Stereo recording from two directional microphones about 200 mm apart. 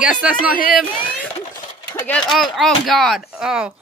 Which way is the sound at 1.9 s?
5° left (ahead or behind).